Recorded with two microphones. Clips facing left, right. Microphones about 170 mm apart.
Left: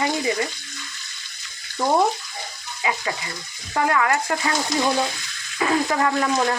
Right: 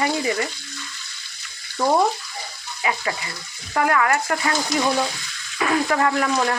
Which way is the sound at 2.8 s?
20° left (ahead or behind).